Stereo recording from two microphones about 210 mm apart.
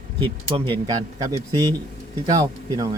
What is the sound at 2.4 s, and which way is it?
Speech, 15° right (ahead or behind).